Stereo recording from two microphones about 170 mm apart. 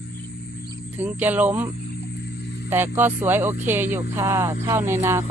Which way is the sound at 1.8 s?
75° left (ahead or behind).